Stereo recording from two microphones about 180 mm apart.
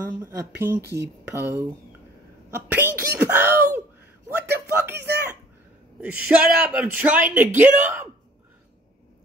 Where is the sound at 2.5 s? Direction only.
10° right (ahead or behind).